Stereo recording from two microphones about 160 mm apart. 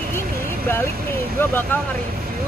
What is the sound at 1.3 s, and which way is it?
Speech, 15° left (ahead or behind).